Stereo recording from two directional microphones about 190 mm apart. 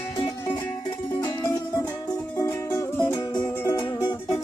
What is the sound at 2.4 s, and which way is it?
Music, 15° left (ahead or behind).